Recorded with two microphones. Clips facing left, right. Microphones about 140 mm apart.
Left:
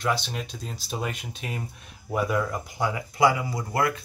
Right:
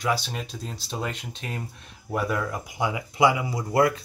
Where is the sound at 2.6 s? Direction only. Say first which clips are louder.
Even; 15° right (ahead or behind).